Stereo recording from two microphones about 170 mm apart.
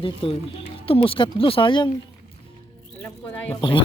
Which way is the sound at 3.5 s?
30° left (ahead or behind).